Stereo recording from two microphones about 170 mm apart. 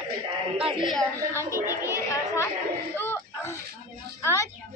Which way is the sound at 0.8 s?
Centre (ahead or behind).